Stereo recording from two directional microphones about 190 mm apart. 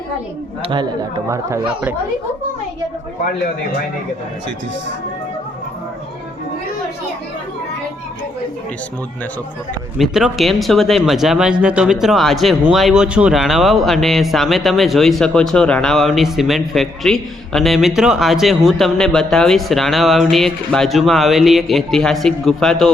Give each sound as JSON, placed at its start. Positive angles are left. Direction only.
{"t": 0.6, "sound": "speech", "side_deg": -25}
{"t": 10.0, "sound": "a man's voice", "side_deg": 0}